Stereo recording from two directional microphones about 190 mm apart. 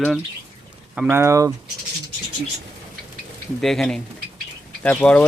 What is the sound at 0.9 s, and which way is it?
Speech, 10° right (ahead or behind).